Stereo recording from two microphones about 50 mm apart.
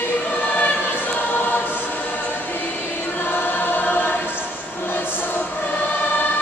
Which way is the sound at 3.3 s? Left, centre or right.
Left.